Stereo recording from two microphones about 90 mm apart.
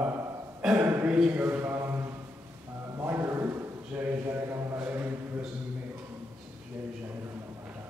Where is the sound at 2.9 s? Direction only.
25° right (ahead or behind).